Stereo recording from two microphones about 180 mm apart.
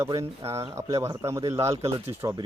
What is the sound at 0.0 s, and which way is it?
A man's voice, 15° right (ahead or behind).